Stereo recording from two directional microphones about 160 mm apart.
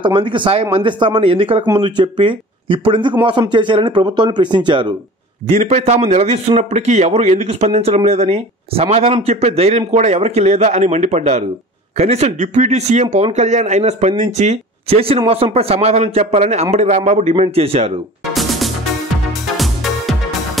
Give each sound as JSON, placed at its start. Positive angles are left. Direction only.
{"t": 0.0, "sound": "speech", "side_deg": -30}
{"t": 5.5, "sound": "a man's voice", "side_deg": -45}
{"t": 18.3, "sound": "music", "side_deg": 0}